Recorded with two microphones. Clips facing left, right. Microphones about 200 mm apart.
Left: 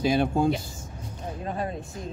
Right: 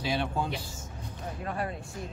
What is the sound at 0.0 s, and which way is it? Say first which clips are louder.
Speech: left 8 dB; 45° left (ahead or behind).